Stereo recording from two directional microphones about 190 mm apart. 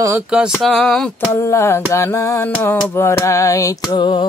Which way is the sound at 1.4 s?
15° left (ahead or behind).